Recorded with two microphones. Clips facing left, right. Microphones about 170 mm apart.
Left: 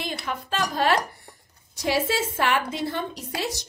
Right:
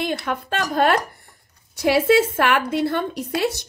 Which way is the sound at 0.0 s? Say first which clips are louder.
Right 6 dB; 55° right (ahead or behind).